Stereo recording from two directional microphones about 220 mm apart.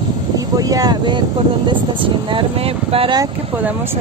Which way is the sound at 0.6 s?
15° right (ahead or behind).